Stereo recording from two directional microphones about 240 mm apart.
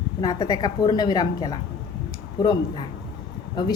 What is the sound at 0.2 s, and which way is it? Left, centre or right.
A woman's voice, centre.